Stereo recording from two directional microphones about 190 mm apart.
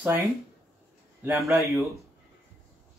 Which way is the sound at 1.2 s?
15° right (ahead or behind).